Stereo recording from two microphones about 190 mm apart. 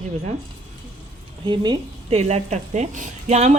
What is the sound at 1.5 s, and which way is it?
A woman's voice, 30° right (ahead or behind).